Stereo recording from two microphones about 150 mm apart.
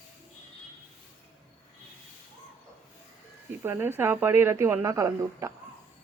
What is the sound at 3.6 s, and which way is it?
A woman's voice, 15° right (ahead or behind).